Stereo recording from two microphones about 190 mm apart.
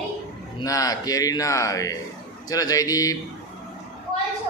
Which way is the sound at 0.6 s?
20° left (ahead or behind).